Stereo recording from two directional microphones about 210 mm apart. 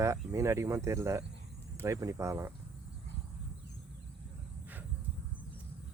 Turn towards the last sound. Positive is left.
turn(degrees=-10)  # may be behind; listen again after turning